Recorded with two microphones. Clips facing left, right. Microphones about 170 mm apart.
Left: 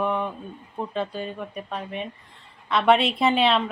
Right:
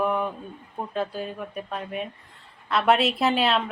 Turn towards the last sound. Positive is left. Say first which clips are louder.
# left 2 dB
turn(degrees=0)  # may be behind; listen again after turning